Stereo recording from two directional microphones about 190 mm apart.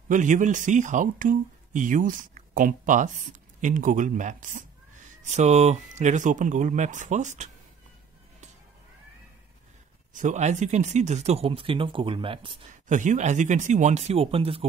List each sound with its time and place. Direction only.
0.1 s speech: 40° right (ahead or behind)
10.1 s speech: 40° right (ahead or behind)
12.8 s speech: 40° right (ahead or behind)